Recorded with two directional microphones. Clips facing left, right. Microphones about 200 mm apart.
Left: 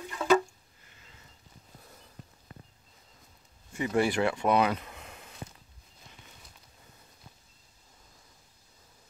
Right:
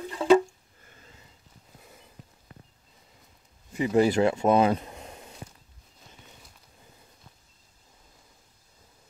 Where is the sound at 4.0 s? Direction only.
40° right (ahead or behind).